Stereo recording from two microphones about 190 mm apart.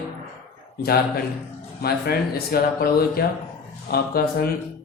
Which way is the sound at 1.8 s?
55° left (ahead or behind).